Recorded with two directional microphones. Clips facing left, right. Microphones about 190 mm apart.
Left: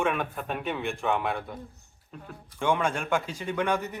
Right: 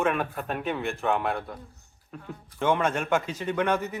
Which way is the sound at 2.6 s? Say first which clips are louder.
Right 2 dB; centre (ahead or behind).